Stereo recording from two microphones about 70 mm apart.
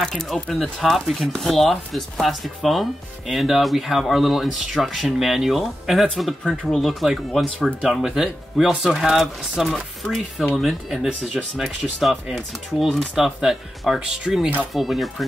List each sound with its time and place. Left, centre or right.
0.0 s speech: centre
10.0 s speech: centre
10.6 s speech: centre
14.7 s speech: centre